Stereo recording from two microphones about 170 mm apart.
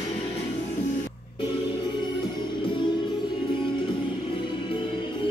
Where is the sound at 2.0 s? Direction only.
25° left (ahead or behind).